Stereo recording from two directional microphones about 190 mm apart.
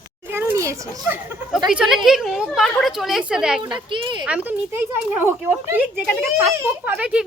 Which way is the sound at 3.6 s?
25° right (ahead or behind).